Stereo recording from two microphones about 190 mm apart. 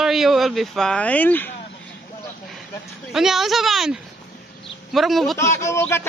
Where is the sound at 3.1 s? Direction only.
Centre (ahead or behind).